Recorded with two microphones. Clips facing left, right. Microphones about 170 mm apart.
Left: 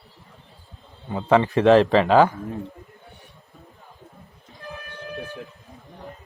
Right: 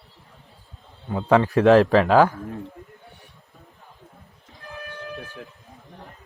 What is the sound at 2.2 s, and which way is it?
Speech, 10° left (ahead or behind).